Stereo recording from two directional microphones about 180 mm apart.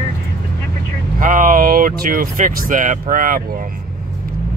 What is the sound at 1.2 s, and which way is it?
Speech, 50° right (ahead or behind).